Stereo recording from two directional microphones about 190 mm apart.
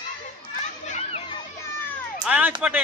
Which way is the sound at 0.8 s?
35° left (ahead or behind).